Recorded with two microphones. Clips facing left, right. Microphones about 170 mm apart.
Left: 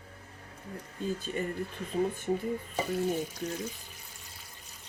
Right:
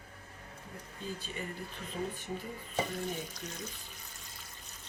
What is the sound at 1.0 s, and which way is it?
Speech, 45° left (ahead or behind).